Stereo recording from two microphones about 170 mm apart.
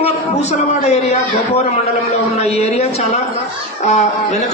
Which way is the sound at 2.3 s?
40° left (ahead or behind).